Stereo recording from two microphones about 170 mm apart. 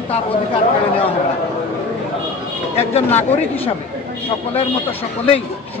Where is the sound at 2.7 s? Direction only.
40° left (ahead or behind).